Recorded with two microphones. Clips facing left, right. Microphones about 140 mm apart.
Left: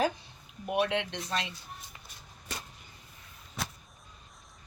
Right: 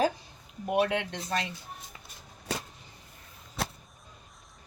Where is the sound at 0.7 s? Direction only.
45° right (ahead or behind).